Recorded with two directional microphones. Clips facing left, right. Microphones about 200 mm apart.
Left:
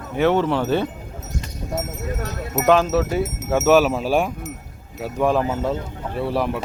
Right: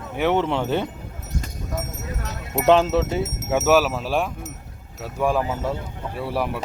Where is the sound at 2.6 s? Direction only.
30° right (ahead or behind).